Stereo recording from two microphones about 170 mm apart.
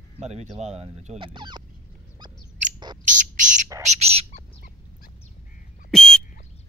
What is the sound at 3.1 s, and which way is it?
Speech, 45° right (ahead or behind).